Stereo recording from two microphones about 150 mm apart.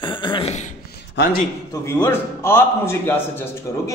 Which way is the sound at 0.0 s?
30° left (ahead or behind).